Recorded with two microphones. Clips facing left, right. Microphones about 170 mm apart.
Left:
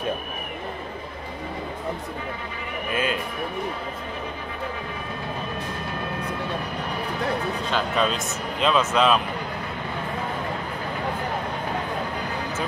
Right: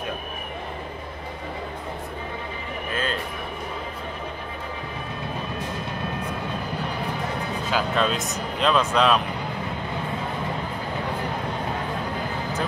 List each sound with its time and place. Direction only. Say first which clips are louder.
2.9 s music: left 3 dB; 10° left (ahead or behind)
7.7 s speech: right 1 dB; centre (ahead or behind)